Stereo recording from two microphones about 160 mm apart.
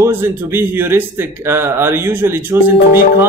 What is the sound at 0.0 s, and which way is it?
Speech, 15° right (ahead or behind).